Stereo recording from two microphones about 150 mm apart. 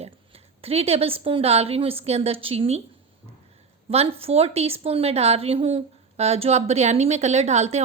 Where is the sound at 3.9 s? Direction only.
40° right (ahead or behind).